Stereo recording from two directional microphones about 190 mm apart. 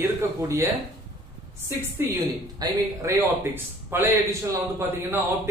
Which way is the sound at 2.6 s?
20° right (ahead or behind).